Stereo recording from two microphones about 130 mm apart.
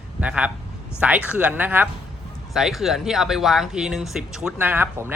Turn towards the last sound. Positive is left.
turn(degrees=-15)  # may be behind; listen again after turning